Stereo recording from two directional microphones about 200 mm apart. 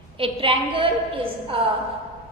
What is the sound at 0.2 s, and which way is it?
A woman's voice, 25° right (ahead or behind).